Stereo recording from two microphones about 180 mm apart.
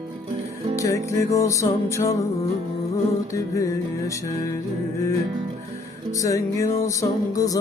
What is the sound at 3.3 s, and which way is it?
Music, 20° left (ahead or behind).